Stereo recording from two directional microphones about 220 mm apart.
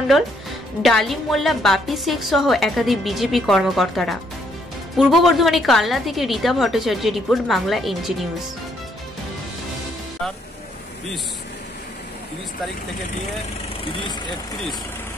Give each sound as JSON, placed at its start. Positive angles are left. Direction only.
{"t": 0.8, "sound": "a woman's voice", "side_deg": 0}